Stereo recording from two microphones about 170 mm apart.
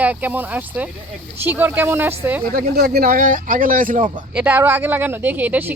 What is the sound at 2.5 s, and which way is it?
A man's voice, 60° right (ahead or behind).